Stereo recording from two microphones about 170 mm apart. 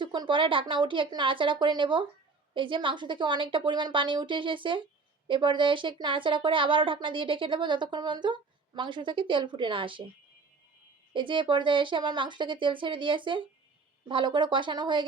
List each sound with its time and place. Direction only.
0.0 s speech: 25° right (ahead or behind)
11.1 s speech: 30° right (ahead or behind)